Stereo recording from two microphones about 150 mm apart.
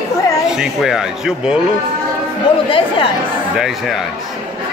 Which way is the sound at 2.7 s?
35° left (ahead or behind).